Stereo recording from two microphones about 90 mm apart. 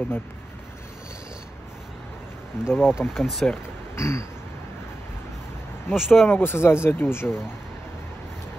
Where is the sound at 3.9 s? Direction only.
30° left (ahead or behind).